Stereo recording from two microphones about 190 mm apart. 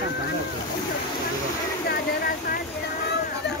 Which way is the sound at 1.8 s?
55° left (ahead or behind).